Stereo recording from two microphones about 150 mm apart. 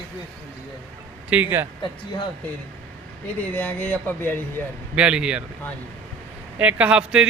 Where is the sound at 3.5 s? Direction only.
10° left (ahead or behind).